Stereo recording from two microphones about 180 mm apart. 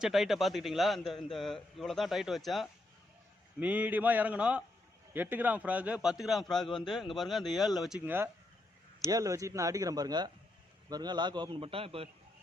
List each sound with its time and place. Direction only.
0.0 s a man's voice: centre (ahead or behind); by 12.0 s 30° right (ahead or behind)